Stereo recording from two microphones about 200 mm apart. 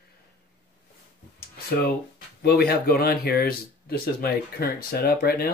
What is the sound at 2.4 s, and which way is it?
Speech, 50° left (ahead or behind).